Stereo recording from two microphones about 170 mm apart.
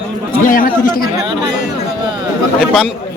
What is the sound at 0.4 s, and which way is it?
Speech, 55° left (ahead or behind).